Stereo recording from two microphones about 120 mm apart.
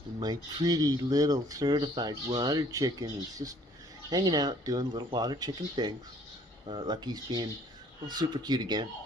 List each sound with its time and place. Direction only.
0.2 s speech: 35° right (ahead or behind)